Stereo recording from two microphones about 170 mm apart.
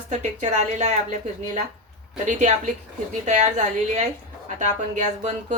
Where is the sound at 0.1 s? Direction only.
45° right (ahead or behind).